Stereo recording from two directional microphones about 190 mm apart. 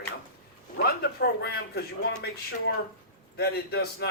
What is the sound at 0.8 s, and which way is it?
A man's voice, 55° left (ahead or behind).